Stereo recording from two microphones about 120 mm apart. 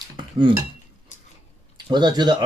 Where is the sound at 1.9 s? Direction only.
35° right (ahead or behind).